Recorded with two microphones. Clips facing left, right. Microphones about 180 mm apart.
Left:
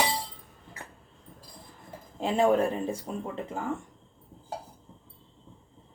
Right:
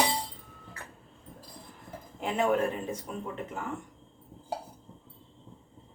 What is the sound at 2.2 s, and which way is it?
Speech, 30° left (ahead or behind).